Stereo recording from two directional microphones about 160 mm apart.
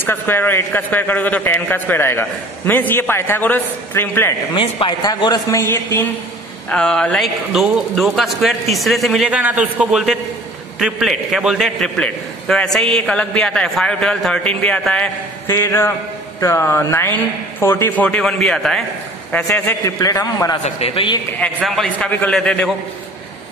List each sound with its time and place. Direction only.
0.0 s a man's voice: 15° left (ahead or behind)
4.6 s speech: 30° left (ahead or behind)
6.7 s a man's voice: 5° left (ahead or behind)
18.0 s a man's voice: 5° left (ahead or behind)
20.6 s a man's voice: 35° left (ahead or behind)
21.5 s a man's voice: centre (ahead or behind)